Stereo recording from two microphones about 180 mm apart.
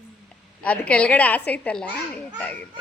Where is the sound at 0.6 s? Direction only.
5° left (ahead or behind).